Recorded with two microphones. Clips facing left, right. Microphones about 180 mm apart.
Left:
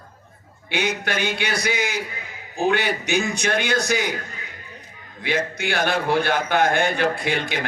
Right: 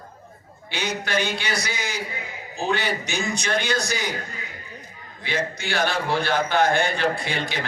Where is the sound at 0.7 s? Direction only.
55° left (ahead or behind).